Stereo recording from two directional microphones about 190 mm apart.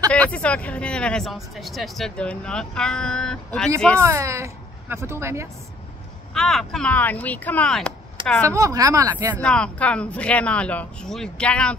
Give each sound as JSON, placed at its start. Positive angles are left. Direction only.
{"t": 0.1, "sound": "speech", "side_deg": 5}
{"t": 4.0, "sound": "speech", "side_deg": -15}
{"t": 6.3, "sound": "speech", "side_deg": 0}
{"t": 8.5, "sound": "speech", "side_deg": -15}
{"t": 9.4, "sound": "speech", "side_deg": 5}